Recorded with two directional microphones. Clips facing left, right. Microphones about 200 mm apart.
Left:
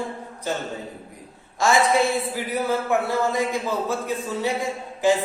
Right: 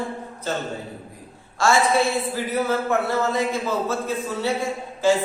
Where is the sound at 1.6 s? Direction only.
15° left (ahead or behind).